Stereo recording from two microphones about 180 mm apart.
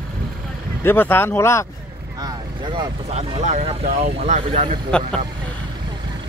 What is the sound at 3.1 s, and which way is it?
Speech, 35° right (ahead or behind).